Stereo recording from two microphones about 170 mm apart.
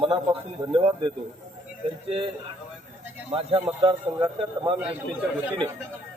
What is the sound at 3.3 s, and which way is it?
Speech, 30° right (ahead or behind).